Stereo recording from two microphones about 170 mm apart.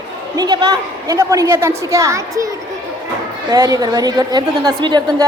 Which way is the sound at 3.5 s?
20° right (ahead or behind).